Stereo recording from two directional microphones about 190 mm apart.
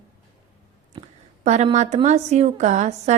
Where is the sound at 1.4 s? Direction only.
35° right (ahead or behind).